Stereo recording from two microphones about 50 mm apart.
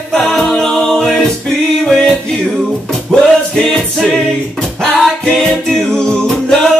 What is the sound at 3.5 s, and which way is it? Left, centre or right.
Music, centre.